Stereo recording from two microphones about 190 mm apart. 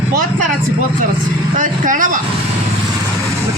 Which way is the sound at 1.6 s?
45° right (ahead or behind).